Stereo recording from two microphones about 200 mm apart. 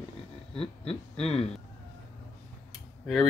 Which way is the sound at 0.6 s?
30° left (ahead or behind).